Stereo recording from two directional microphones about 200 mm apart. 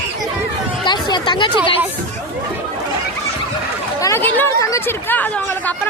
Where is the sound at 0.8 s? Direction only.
20° left (ahead or behind).